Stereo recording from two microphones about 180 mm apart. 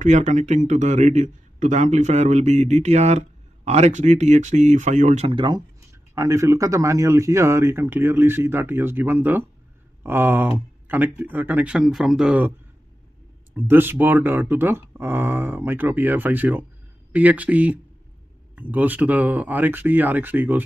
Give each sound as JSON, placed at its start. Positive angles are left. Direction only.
{"t": 0.0, "sound": "a man's voice", "side_deg": -40}
{"t": 6.1, "sound": "speech", "side_deg": -15}
{"t": 13.6, "sound": "speech", "side_deg": -10}